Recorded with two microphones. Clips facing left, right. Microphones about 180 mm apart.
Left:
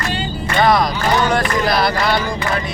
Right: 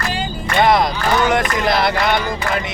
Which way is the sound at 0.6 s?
25° right (ahead or behind).